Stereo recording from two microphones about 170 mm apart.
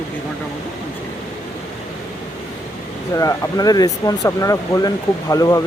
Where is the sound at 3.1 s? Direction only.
20° left (ahead or behind).